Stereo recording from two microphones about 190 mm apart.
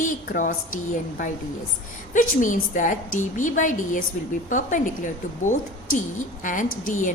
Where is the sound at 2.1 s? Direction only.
45° left (ahead or behind).